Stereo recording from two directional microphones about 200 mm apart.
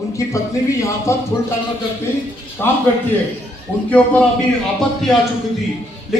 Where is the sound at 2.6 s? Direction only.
10° left (ahead or behind).